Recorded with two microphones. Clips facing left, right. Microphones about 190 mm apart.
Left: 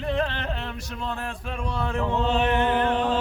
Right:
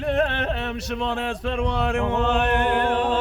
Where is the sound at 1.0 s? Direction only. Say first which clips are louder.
Right 5 dB; 90° right.